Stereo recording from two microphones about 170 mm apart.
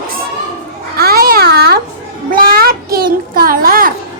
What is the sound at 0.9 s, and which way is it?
Babbling, 60° right (ahead or behind).